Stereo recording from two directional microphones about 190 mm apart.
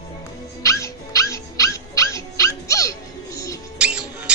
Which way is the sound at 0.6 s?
15° left (ahead or behind).